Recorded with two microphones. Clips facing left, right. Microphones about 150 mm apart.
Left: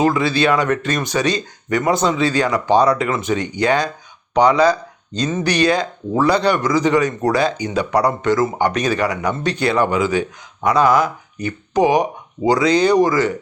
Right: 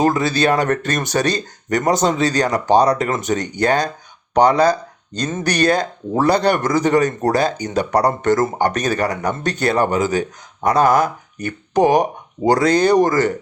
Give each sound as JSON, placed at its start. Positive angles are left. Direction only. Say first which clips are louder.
{"t": 0.0, "sound": "speech", "louder": "even", "side_deg": -40}